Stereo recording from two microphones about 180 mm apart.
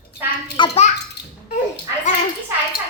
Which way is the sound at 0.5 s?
25° left (ahead or behind).